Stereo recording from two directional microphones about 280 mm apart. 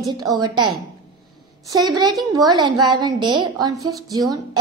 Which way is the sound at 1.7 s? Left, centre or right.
Centre.